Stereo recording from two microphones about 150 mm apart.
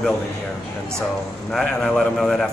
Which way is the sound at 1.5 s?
5° left (ahead or behind).